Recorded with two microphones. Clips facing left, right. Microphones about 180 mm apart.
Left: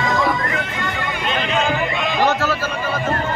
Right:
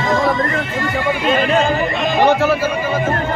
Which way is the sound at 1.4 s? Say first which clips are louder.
Right 5 dB; 45° right (ahead or behind).